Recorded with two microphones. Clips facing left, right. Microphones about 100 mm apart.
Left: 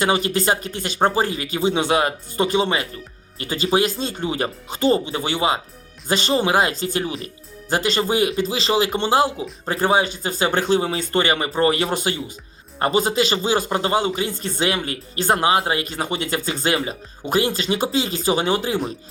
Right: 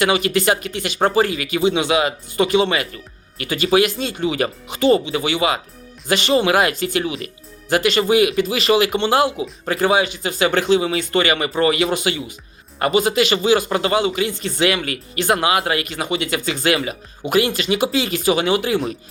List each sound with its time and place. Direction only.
0.0 s speech: 35° left (ahead or behind)